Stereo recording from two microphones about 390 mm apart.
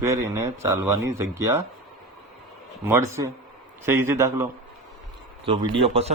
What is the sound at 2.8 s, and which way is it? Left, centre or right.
A man's voice, centre.